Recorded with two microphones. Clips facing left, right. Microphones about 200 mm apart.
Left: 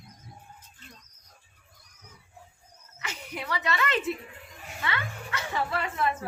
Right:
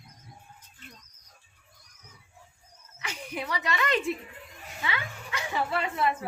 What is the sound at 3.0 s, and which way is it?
A woman's voice, 10° right (ahead or behind).